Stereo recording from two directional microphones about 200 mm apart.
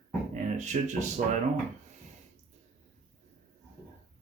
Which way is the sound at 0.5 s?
35° right (ahead or behind).